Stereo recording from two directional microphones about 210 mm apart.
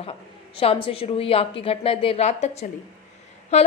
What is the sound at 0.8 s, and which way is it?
A woman's voice, 25° left (ahead or behind).